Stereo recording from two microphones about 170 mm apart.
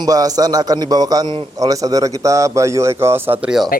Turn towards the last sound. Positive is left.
turn(degrees=-5)  # may be behind; listen again after turning